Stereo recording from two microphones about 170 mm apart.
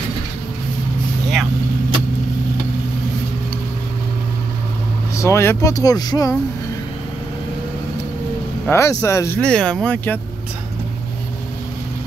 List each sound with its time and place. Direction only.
5.1 s speech: 15° left (ahead or behind)
8.6 s speech: 15° left (ahead or behind)
9.4 s speech: 5° left (ahead or behind)